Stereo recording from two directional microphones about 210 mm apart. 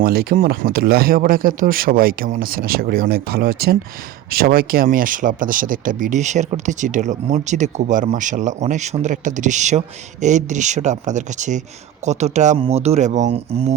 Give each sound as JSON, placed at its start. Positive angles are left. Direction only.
{"t": 0.0, "sound": "speech", "side_deg": -45}